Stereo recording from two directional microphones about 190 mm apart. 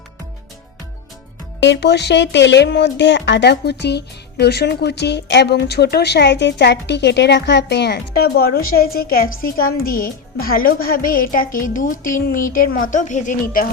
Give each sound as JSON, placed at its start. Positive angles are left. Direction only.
{"t": 1.6, "sound": "a woman's voice", "side_deg": 65}